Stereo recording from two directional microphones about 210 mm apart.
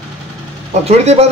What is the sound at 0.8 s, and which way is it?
Speech, 30° right (ahead or behind).